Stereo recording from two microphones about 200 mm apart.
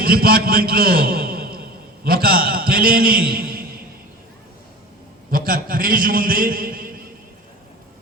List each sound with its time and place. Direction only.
0.0 s a man's voice: 50° right (ahead or behind)
5.3 s a man's voice: 45° right (ahead or behind)